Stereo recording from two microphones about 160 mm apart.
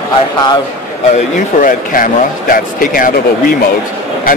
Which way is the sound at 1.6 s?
60° left (ahead or behind).